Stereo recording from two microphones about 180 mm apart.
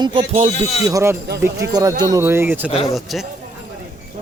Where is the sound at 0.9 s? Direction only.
15° right (ahead or behind).